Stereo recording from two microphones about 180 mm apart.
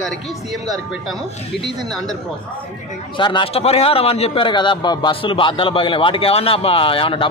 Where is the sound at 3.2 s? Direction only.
25° left (ahead or behind).